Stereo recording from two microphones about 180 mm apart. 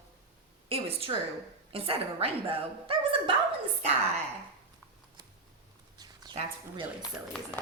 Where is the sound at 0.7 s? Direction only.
35° right (ahead or behind).